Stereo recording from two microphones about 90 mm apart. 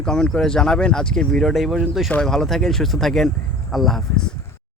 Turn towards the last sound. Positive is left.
turn(degrees=5)  # may be behind; listen again after turning